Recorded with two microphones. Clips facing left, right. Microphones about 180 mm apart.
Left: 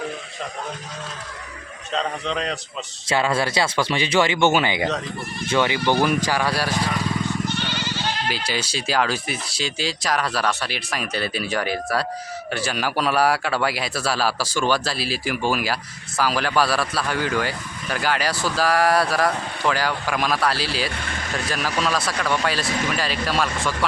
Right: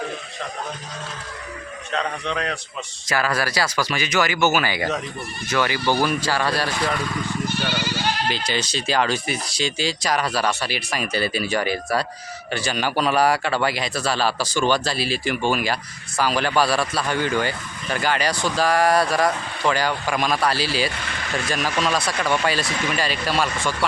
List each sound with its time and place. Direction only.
2.0 s speech: centre (ahead or behind)
3.1 s speech: 25° left (ahead or behind)
7.4 s goat: 10° right (ahead or behind)
8.3 s speech: 10° left (ahead or behind)